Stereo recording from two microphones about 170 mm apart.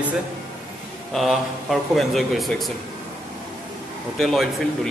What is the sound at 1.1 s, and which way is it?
Speech, centre (ahead or behind).